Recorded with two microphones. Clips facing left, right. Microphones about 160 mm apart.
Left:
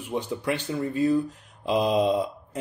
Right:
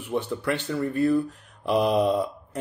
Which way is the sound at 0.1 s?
15° left (ahead or behind).